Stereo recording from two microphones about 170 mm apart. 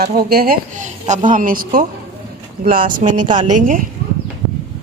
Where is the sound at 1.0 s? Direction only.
45° right (ahead or behind).